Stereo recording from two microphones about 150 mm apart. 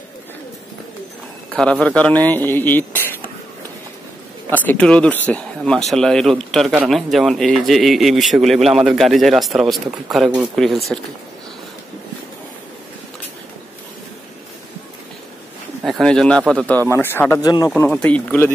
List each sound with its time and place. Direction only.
1.5 s speech: 5° left (ahead or behind)
4.5 s speech: 10° left (ahead or behind)
15.8 s speech: centre (ahead or behind)
17.4 s speech: 25° left (ahead or behind)
17.6 s speech: 10° left (ahead or behind)